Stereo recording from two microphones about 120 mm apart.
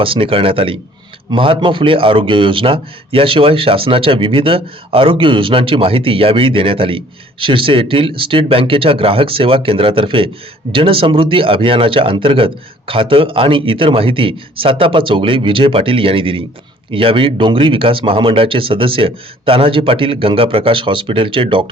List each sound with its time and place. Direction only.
0.0 s speech: 50° right (ahead or behind)